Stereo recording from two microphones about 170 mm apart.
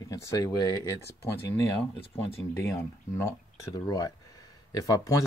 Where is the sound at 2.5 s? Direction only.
15° left (ahead or behind).